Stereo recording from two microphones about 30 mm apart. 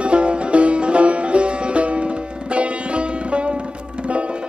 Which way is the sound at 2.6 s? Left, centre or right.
Right.